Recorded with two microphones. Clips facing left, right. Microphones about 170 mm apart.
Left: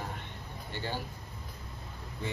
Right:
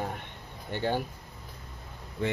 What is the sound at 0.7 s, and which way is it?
Speech, 55° right (ahead or behind).